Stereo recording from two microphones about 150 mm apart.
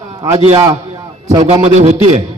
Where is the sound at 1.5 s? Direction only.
45° right (ahead or behind).